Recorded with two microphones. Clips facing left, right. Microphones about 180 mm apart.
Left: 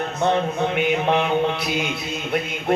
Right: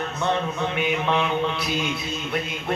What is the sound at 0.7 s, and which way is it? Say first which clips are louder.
Speech: left 3 dB; 55° left (ahead or behind).